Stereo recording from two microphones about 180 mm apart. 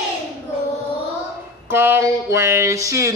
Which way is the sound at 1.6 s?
10° right (ahead or behind).